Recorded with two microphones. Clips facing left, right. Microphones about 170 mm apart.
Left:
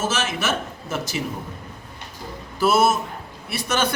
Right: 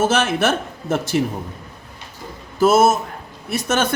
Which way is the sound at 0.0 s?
55° right (ahead or behind).